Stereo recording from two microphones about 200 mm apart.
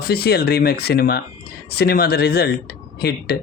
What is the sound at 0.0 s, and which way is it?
Speech, 50° left (ahead or behind).